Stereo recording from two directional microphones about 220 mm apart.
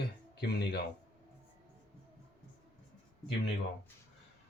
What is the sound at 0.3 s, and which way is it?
Speech, 45° left (ahead or behind).